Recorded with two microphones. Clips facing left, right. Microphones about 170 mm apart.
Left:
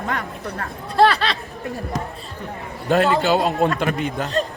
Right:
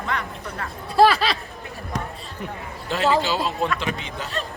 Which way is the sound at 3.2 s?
60° left (ahead or behind).